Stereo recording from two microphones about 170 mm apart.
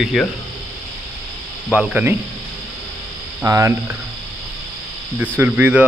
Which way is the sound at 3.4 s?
15° right (ahead or behind).